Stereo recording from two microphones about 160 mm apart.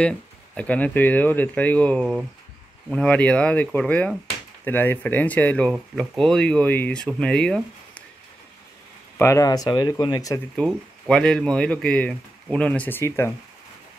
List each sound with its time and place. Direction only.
0.6 s speech: 10° left (ahead or behind)
9.2 s speech: 20° left (ahead or behind)
10.5 s speech: 5° left (ahead or behind)